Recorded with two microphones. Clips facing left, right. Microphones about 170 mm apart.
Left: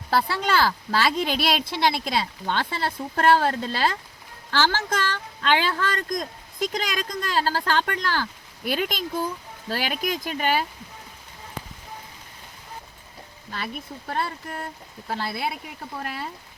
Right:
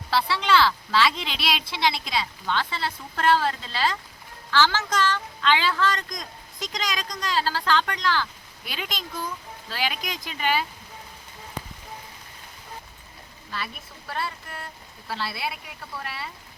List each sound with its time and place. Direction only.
0.1 s speech: 45° left (ahead or behind)
14.1 s speech: 50° left (ahead or behind)